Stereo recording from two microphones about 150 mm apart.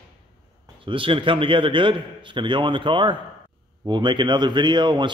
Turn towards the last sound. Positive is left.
turn(degrees=-30)  # may be behind; listen again after turning